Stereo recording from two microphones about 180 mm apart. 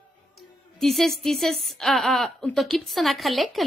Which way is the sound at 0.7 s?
Centre (ahead or behind).